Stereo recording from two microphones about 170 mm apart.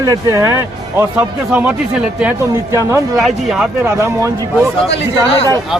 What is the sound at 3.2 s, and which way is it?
Speech, centre (ahead or behind).